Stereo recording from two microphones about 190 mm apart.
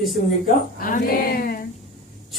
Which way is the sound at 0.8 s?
45° left (ahead or behind).